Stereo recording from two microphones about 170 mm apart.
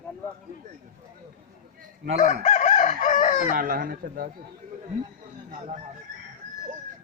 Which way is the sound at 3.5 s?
55° right (ahead or behind).